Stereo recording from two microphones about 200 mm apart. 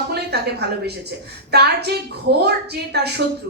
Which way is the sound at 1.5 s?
55° right (ahead or behind).